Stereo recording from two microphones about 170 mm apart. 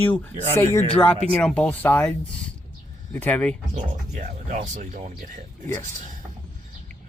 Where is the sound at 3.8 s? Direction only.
45° right (ahead or behind).